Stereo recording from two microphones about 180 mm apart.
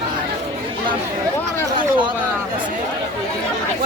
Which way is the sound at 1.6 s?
25° right (ahead or behind).